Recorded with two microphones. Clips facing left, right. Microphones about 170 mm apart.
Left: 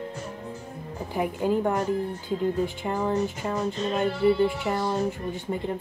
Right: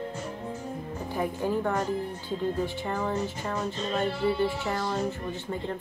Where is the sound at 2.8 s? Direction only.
20° left (ahead or behind).